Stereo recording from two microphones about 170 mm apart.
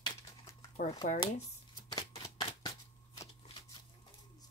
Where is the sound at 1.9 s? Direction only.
25° left (ahead or behind).